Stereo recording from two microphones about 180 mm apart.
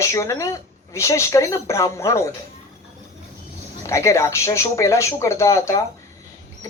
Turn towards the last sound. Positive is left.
turn(degrees=15)  # may be behind; listen again after turning